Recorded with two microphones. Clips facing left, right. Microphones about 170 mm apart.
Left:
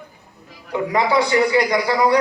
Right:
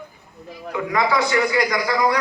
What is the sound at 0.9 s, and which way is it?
A man's voice, 30° left (ahead or behind).